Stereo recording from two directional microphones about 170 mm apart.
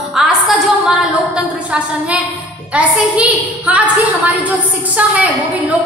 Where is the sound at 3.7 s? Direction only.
10° right (ahead or behind).